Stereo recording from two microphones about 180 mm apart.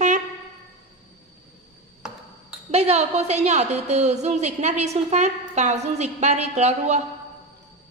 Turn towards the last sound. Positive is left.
turn(degrees=-40)  # may be behind; listen again after turning